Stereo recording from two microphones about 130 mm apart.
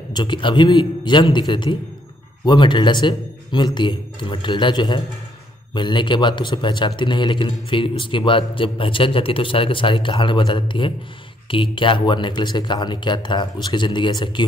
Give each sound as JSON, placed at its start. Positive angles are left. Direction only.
{"t": 0.1, "sound": "a man's voice", "side_deg": 35}